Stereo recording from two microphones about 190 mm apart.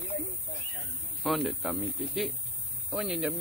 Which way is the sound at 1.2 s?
Centre (ahead or behind).